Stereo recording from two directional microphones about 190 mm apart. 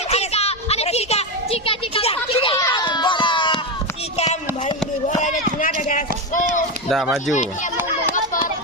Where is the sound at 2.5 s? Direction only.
20° left (ahead or behind).